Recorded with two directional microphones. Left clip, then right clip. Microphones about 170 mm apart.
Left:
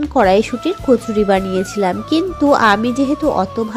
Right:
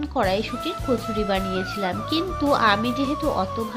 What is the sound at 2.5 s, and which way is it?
Speech, 40° left (ahead or behind).